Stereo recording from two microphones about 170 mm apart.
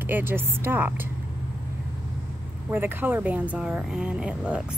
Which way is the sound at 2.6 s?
10° right (ahead or behind).